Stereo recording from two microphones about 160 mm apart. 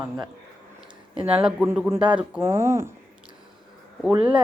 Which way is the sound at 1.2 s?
5° right (ahead or behind).